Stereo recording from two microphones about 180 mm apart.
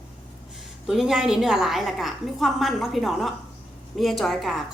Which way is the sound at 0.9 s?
5° right (ahead or behind).